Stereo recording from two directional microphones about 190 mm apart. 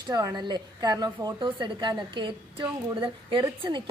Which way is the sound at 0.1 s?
20° right (ahead or behind).